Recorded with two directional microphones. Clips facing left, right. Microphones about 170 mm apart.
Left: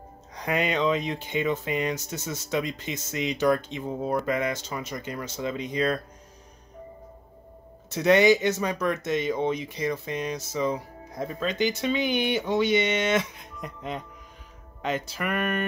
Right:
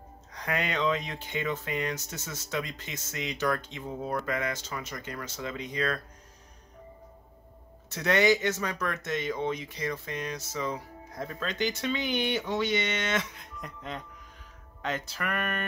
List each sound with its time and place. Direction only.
0.3 s speech: 15° left (ahead or behind)
7.9 s speech: 15° left (ahead or behind)